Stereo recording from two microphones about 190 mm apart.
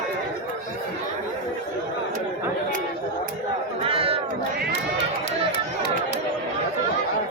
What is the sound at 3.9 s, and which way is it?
Speech, 30° right (ahead or behind).